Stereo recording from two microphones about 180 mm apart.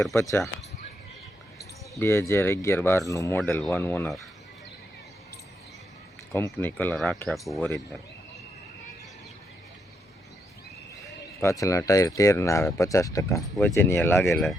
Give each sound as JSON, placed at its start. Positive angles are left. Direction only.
{"t": 0.1, "sound": "speech", "side_deg": 15}
{"t": 2.0, "sound": "speech", "side_deg": 15}
{"t": 6.3, "sound": "speech", "side_deg": 10}
{"t": 11.4, "sound": "speech", "side_deg": 15}